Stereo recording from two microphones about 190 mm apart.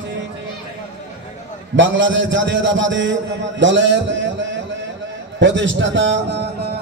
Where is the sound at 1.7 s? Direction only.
80° right; by 6.7 s 65° right (ahead or behind).